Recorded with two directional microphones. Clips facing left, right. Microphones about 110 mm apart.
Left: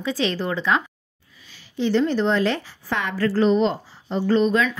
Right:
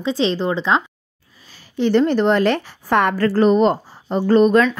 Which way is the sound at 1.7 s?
60° right (ahead or behind).